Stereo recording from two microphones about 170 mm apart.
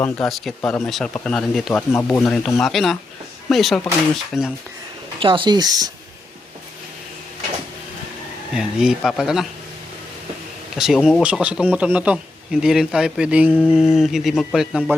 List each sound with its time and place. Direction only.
0.0 s speech: centre (ahead or behind)
1.7 s speech: 15° left (ahead or behind)
2.2 s speech: centre (ahead or behind)
5.2 s speech: 30° right (ahead or behind)
8.5 s speech: 5° right (ahead or behind)
10.8 s speech: centre (ahead or behind)